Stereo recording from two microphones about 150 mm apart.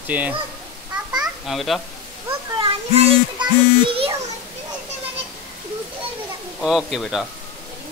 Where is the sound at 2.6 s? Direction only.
35° right (ahead or behind).